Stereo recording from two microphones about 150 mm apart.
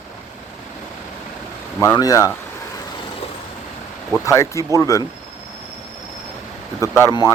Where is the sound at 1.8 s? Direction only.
25° left (ahead or behind).